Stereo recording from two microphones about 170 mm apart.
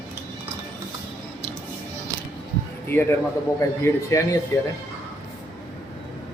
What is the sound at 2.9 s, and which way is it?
Speech, 15° left (ahead or behind).